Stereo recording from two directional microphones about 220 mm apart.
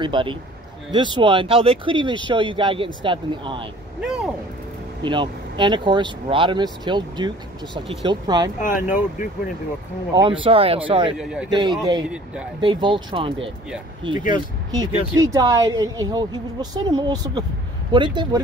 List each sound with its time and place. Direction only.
0.0 s speech: 20° right (ahead or behind)
4.0 s a sound: 5° right (ahead or behind)
5.0 s speech: 20° right (ahead or behind)
8.5 s speech: 35° left (ahead or behind)
10.1 s speech: 20° right (ahead or behind)
11.1 s speech: centre (ahead or behind)
11.5 s a woman's voice: 20° right (ahead or behind)